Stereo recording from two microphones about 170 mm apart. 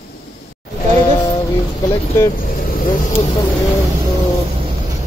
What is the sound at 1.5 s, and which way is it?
Vehicle, 20° left (ahead or behind).